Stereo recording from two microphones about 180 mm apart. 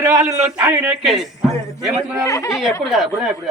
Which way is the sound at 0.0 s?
15° right (ahead or behind).